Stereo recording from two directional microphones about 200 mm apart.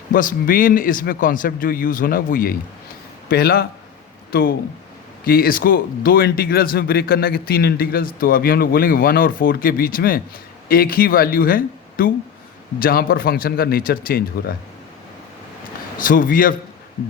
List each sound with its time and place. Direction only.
0.1 s speech: 45° left (ahead or behind)
16.0 s speech: 45° left (ahead or behind)